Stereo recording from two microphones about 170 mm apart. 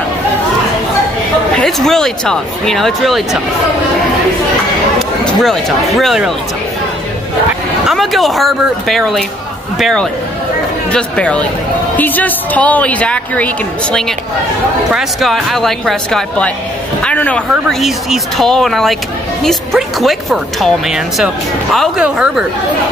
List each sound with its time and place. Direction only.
1.6 s speech: centre (ahead or behind)
4.9 s speech: centre (ahead or behind)
7.9 s a woman's voice: centre (ahead or behind)
14.9 s a woman's voice: centre (ahead or behind)